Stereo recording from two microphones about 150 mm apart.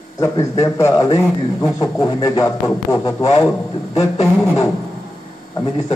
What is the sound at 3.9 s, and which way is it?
Speech, 45° left (ahead or behind).